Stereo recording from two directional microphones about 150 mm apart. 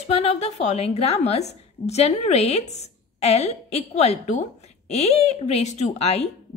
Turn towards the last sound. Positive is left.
turn(degrees=45)  # may be behind; listen again after turning